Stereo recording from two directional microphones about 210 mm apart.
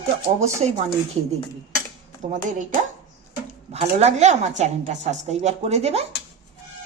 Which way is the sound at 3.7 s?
30° right (ahead or behind).